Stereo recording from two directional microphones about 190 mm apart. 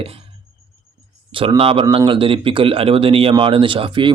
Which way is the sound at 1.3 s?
25° right (ahead or behind).